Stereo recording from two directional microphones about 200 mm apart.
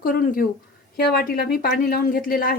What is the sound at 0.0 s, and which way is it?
Speech, 45° left (ahead or behind).